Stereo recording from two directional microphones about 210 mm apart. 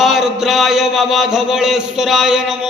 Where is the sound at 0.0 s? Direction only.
Centre (ahead or behind).